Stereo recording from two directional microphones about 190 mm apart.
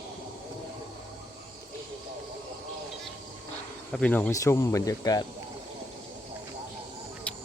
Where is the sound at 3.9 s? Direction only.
5° left (ahead or behind).